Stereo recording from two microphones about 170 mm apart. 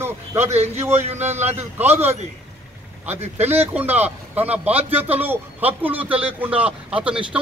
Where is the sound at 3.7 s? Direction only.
10° right (ahead or behind).